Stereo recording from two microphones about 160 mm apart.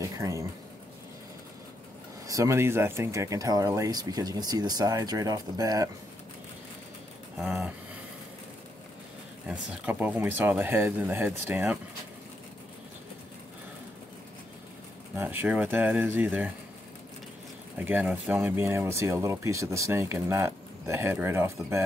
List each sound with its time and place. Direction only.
0.2 s speech: 20° right (ahead or behind)
2.2 s speech: 20° right (ahead or behind)
7.3 s a sound: centre (ahead or behind)
9.5 s speech: 10° right (ahead or behind)
15.1 s speech: 10° right (ahead or behind)
17.7 s speech: 10° right (ahead or behind)